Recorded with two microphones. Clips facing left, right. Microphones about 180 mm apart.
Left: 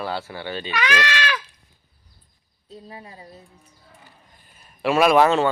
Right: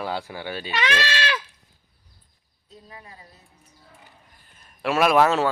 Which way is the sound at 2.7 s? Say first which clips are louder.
Left 5 dB; 30° left (ahead or behind).